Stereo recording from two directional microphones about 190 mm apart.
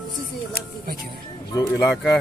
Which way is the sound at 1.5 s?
15° left (ahead or behind).